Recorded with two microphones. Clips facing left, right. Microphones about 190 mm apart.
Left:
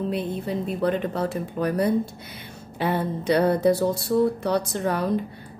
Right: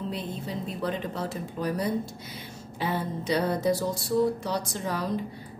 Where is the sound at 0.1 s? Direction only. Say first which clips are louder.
Left 7 dB; 60° left (ahead or behind).